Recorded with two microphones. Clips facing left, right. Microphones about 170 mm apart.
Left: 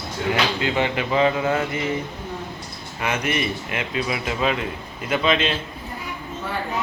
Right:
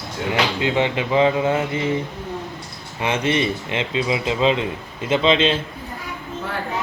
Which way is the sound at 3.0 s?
25° right (ahead or behind).